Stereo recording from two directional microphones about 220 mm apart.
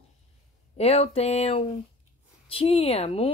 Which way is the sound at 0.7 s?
30° left (ahead or behind).